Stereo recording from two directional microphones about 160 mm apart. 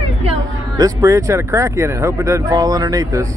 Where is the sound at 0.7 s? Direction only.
20° right (ahead or behind).